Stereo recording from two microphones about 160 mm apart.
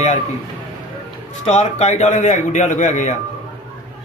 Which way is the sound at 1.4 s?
45° left (ahead or behind).